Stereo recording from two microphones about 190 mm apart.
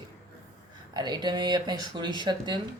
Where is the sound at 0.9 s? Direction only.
25° right (ahead or behind).